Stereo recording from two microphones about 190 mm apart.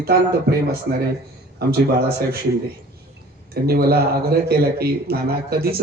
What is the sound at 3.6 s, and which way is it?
A man's voice, 55° right (ahead or behind).